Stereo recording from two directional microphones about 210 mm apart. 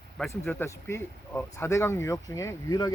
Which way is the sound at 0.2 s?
10° left (ahead or behind).